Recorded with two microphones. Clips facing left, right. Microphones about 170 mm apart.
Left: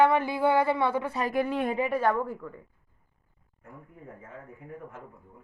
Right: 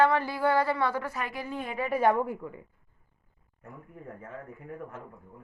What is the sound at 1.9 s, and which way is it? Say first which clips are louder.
Speech: right 1 dB; 15° right (ahead or behind).